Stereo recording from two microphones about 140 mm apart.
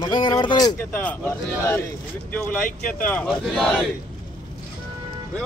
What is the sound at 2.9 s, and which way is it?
Speech, 10° left (ahead or behind).